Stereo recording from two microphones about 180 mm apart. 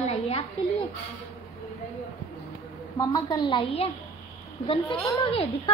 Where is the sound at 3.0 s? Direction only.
25° left (ahead or behind).